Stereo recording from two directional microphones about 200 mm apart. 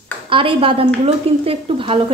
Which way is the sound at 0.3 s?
25° right (ahead or behind).